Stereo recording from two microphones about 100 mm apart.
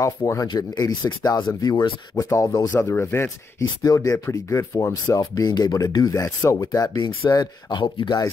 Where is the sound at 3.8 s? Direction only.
35° left (ahead or behind).